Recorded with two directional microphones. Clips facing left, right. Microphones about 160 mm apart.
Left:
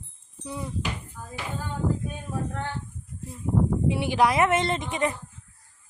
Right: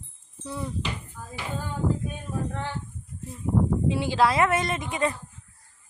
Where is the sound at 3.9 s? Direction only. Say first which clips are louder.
Even; 15° left (ahead or behind).